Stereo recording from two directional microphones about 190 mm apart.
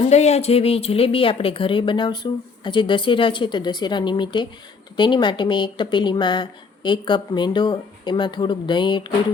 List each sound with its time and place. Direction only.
0.0 s speech: 35° left (ahead or behind)